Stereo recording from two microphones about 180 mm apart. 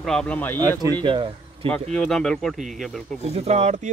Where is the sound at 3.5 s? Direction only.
40° right (ahead or behind).